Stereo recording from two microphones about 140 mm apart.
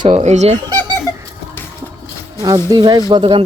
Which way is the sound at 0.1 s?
55° right (ahead or behind).